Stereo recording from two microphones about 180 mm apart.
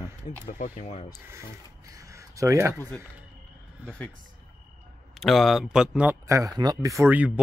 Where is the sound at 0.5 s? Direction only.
45° left (ahead or behind).